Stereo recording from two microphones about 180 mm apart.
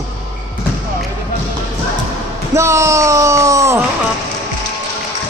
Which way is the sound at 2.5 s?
15° right (ahead or behind).